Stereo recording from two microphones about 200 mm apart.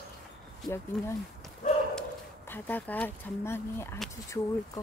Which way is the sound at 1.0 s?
Centre (ahead or behind).